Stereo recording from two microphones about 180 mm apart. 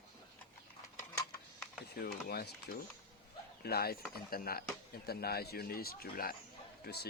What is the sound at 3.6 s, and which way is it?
Speech, 60° left (ahead or behind).